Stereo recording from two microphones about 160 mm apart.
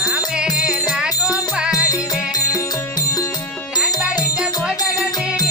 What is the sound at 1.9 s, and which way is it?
Music, 25° left (ahead or behind).